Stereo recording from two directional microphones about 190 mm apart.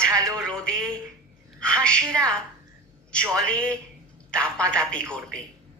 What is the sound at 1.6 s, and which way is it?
Speech, 5° left (ahead or behind).